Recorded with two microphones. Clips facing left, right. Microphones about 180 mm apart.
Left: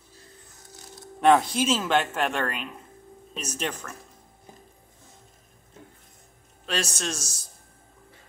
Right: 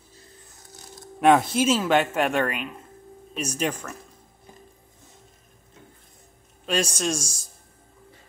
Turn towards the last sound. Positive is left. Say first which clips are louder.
# right 5 dB
turn(degrees=-10)  # may be behind; listen again after turning